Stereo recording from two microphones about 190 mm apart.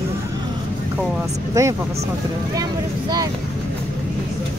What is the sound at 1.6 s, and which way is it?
Speech, 15° right (ahead or behind).